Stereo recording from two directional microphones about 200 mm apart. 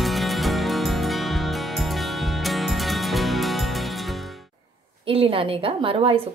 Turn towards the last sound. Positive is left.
turn(degrees=-25)  # may be behind; listen again after turning